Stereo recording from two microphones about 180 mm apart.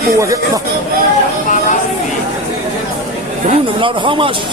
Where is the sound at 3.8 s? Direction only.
30° right (ahead or behind).